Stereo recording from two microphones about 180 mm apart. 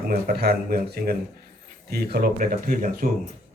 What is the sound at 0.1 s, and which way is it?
A man's voice, 60° right (ahead or behind).